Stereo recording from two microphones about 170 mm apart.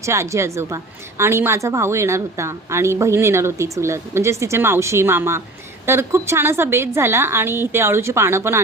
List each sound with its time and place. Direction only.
0.0 s a woman's voice: 15° right (ahead or behind)